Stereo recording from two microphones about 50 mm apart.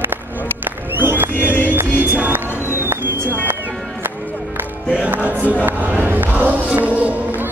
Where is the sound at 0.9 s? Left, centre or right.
Right.